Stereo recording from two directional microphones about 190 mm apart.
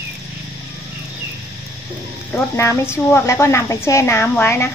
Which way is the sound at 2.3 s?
15° left (ahead or behind).